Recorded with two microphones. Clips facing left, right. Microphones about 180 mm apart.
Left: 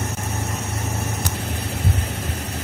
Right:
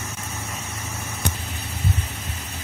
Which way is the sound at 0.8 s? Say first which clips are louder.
Left 1 dB; 70° left (ahead or behind).